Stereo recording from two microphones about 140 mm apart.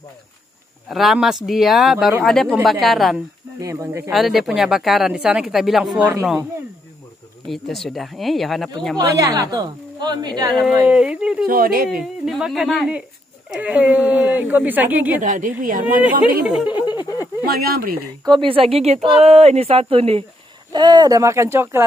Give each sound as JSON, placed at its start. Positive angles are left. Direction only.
{"t": 0.8, "sound": "speech", "side_deg": 0}
{"t": 3.6, "sound": "a woman's voice", "side_deg": -20}
{"t": 4.1, "sound": "speech", "side_deg": 0}
{"t": 7.4, "sound": "speech", "side_deg": 0}
{"t": 8.9, "sound": "a woman's voice", "side_deg": -25}
{"t": 10.9, "sound": "speech", "side_deg": -10}
{"t": 11.4, "sound": "speech", "side_deg": -90}
{"t": 12.3, "sound": "speech", "side_deg": -5}
{"t": 15.1, "sound": "a woman's voice", "side_deg": -70}
{"t": 16.4, "sound": "speech", "side_deg": -10}
{"t": 16.8, "sound": "a sound", "side_deg": 30}
{"t": 17.5, "sound": "speech", "side_deg": -90}
{"t": 18.2, "sound": "speech", "side_deg": -35}
{"t": 20.7, "sound": "a woman's voice", "side_deg": -30}